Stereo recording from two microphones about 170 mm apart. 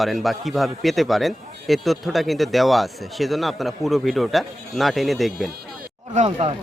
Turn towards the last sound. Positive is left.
turn(degrees=-35)  # may be behind; listen again after turning